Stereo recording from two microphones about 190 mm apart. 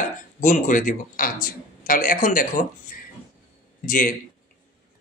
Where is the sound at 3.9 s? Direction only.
45° left (ahead or behind).